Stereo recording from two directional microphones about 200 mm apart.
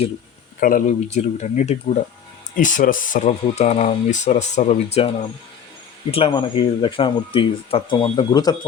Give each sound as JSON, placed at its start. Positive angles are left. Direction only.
{"t": 0.6, "sound": "speech", "side_deg": 40}